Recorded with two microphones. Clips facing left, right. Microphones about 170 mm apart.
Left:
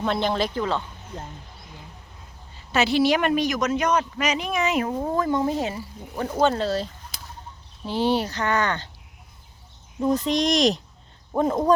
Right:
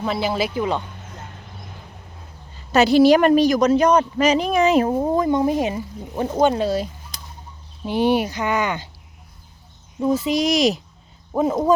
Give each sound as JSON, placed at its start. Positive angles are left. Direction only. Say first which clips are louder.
{"t": 0.0, "sound": "speech", "louder": "right 1 dB", "side_deg": -5}
{"t": 2.7, "sound": "a woman's voice", "louder": "right 7 dB", "side_deg": -40}
{"t": 10.0, "sound": "speech", "louder": "right 2 dB", "side_deg": -5}